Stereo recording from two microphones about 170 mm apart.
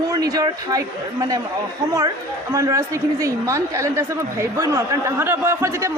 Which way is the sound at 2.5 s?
20° right (ahead or behind).